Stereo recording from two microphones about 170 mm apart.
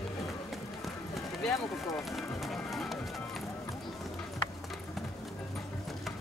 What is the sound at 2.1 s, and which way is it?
Music, centre (ahead or behind).